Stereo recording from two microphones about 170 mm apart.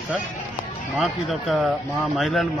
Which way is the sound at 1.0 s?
Centre (ahead or behind).